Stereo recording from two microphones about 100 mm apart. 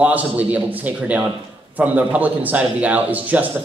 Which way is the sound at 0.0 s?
15° right (ahead or behind).